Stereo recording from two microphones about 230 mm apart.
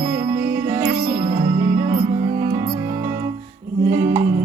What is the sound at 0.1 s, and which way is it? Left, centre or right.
Music, centre.